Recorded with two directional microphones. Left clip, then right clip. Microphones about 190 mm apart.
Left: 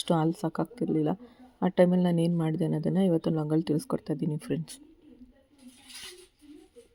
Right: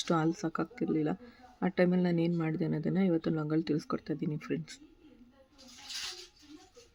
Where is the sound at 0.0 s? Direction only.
15° left (ahead or behind).